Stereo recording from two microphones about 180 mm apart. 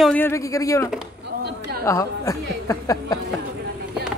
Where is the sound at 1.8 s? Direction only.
15° left (ahead or behind).